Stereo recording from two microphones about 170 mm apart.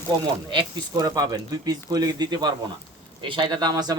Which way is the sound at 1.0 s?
20° right (ahead or behind).